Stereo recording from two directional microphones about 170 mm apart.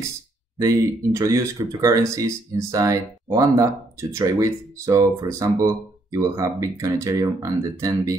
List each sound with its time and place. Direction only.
0.6 s speech: 20° right (ahead or behind)